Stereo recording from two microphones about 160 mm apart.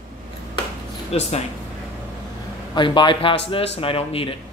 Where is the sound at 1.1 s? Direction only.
40° left (ahead or behind).